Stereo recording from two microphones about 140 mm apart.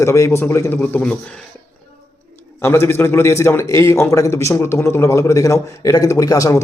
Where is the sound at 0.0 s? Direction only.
20° left (ahead or behind).